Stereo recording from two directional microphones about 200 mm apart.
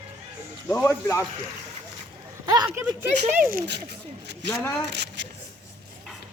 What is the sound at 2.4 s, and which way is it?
Speech, 20° right (ahead or behind).